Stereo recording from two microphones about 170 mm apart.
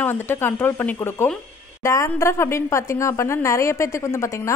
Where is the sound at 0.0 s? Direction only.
10° left (ahead or behind).